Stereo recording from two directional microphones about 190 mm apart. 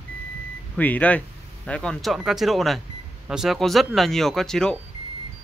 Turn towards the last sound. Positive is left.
turn(degrees=5)  # may be behind; listen again after turning